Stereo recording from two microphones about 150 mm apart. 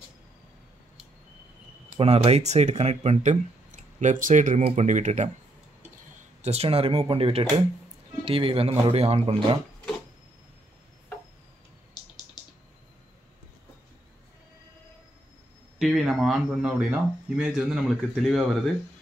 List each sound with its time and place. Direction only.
2.0 s speech: 40° right (ahead or behind)
6.4 s speech: 45° right (ahead or behind)
12.4 s typing: 30° left (ahead or behind)
15.8 s speech: centre (ahead or behind)